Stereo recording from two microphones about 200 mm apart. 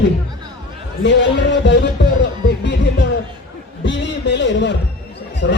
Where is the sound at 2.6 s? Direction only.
60° left (ahead or behind).